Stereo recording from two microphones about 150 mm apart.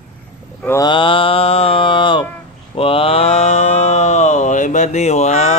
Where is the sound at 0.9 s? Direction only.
35° left (ahead or behind).